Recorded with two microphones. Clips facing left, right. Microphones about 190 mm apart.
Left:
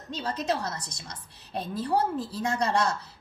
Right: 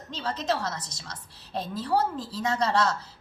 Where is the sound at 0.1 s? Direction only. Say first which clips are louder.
Even; 10° left (ahead or behind).